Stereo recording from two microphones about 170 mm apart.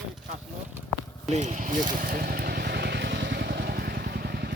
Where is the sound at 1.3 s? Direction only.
40° right (ahead or behind).